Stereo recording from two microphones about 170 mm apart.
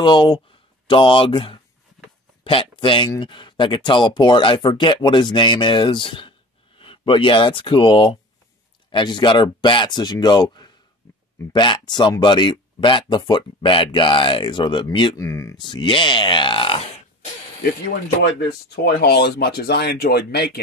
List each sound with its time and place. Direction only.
0.0 s speech: 25° left (ahead or behind)
15.2 s speech: 15° left (ahead or behind)
15.6 s speech: 30° left (ahead or behind)
18.9 s speech: 70° left (ahead or behind)